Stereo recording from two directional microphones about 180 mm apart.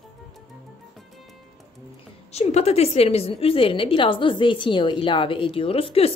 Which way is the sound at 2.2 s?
35° left (ahead or behind).